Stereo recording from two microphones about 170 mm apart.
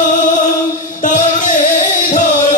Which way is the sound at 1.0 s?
45° left (ahead or behind).